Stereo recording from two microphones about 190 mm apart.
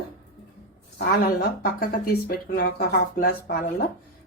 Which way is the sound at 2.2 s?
50° left (ahead or behind).